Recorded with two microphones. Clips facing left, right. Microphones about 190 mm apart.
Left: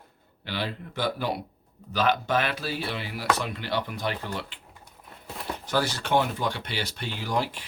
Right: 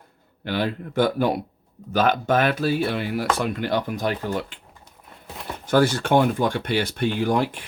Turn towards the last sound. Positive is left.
turn(degrees=-55)  # may be behind; listen again after turning